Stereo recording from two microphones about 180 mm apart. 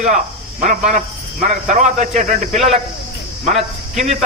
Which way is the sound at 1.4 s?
45° right (ahead or behind).